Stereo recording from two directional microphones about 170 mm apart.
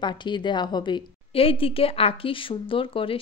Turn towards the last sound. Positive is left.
turn(degrees=30)  # may be behind; listen again after turning